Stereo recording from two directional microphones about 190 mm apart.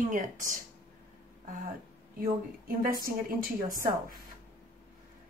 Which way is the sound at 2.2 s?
50° right (ahead or behind).